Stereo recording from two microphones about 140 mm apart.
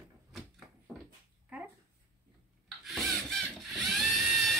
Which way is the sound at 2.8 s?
Centre (ahead or behind).